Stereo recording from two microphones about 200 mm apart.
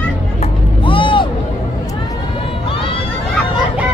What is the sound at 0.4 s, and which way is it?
Music, 25° left (ahead or behind).